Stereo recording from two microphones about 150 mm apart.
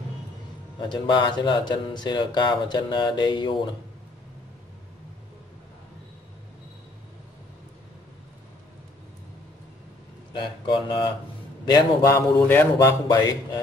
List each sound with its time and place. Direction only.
0.7 s speech: 30° left (ahead or behind)
10.3 s speech: 30° left (ahead or behind)
12.4 s mantra: 15° left (ahead or behind)
12.7 s speech: 25° left (ahead or behind)